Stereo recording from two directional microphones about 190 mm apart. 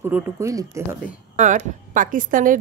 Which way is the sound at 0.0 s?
15° right (ahead or behind).